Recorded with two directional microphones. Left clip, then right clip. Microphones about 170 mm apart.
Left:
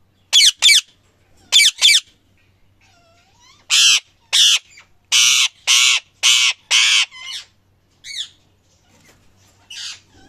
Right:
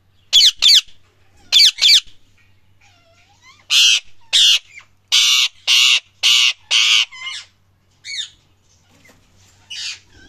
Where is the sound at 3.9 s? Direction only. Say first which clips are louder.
Even; 25° left (ahead or behind).